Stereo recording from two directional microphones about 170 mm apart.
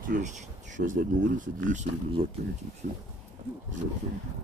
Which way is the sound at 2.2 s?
35° right (ahead or behind).